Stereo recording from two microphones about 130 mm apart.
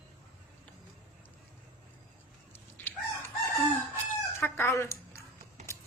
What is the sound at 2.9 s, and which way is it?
Crowing, 15° left (ahead or behind).